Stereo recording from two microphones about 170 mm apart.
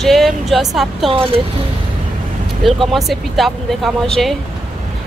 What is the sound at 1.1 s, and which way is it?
Speech, 35° right (ahead or behind).